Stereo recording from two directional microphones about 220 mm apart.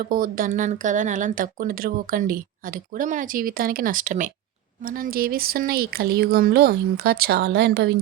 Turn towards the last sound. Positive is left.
turn(degrees=-50)  # may be behind; listen again after turning